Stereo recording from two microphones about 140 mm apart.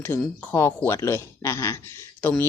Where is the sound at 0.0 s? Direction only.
15° left (ahead or behind).